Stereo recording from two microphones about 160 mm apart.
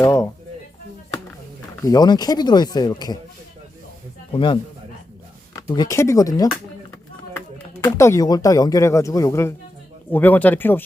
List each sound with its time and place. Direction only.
0.0 s speech: 20° left (ahead or behind)
1.8 s speech: 25° left (ahead or behind)
4.3 s speech: 30° left (ahead or behind)
7.9 s speech: 20° left (ahead or behind)